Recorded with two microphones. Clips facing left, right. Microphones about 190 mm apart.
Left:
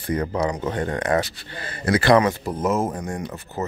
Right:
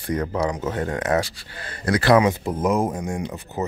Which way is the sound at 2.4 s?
20° right (ahead or behind).